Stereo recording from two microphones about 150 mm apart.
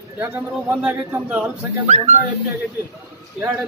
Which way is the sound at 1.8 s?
50° right (ahead or behind).